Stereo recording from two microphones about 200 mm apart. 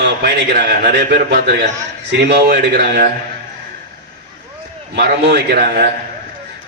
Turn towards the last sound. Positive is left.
turn(degrees=-45)  # may be behind; listen again after turning